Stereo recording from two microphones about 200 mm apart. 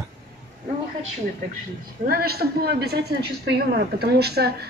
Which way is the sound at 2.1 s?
50° right (ahead or behind).